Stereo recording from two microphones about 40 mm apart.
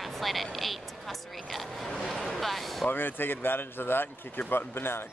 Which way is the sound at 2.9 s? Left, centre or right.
Left.